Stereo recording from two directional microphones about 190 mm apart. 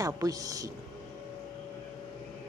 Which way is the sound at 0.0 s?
20° right (ahead or behind).